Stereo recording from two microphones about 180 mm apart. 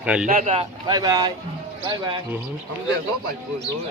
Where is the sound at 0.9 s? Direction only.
20° right (ahead or behind).